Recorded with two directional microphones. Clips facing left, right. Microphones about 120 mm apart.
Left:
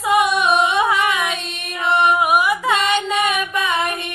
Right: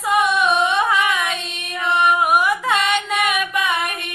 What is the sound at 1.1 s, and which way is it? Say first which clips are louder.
Music: left 1 dB; 5° left (ahead or behind).